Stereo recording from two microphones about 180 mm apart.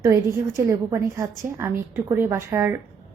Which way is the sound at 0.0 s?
15° right (ahead or behind).